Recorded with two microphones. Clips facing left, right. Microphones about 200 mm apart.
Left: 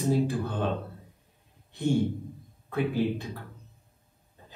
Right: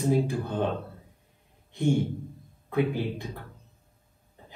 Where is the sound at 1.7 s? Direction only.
15° right (ahead or behind).